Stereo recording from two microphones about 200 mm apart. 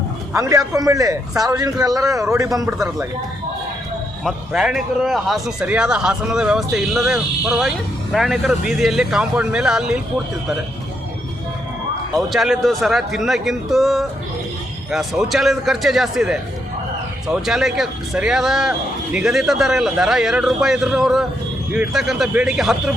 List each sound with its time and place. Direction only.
0.3 s a man's voice: 15° right (ahead or behind)
2.7 s a man's voice: 5° right (ahead or behind)
4.2 s a man's voice: centre (ahead or behind)
12.1 s a man's voice: centre (ahead or behind)